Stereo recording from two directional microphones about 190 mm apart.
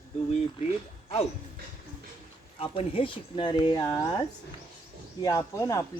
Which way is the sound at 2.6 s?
30° left (ahead or behind).